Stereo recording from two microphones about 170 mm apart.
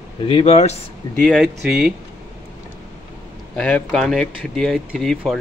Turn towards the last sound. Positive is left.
turn(degrees=0)  # may be behind; listen again after turning